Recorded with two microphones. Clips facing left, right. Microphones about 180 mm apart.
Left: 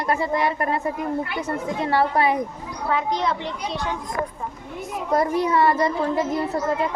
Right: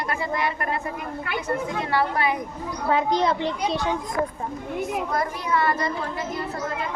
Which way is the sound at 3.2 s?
35° right (ahead or behind).